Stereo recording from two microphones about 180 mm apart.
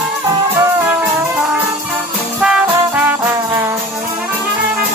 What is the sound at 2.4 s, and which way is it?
Music, 5° right (ahead or behind).